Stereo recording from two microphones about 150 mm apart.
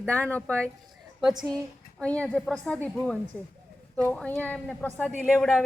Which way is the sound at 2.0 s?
10° left (ahead or behind).